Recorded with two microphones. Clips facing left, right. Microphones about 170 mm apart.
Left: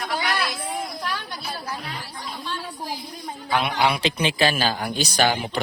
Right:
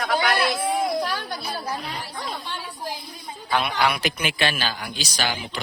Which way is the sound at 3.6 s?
25° left (ahead or behind).